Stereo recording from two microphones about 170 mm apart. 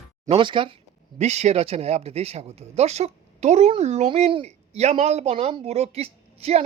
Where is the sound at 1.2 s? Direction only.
40° right (ahead or behind).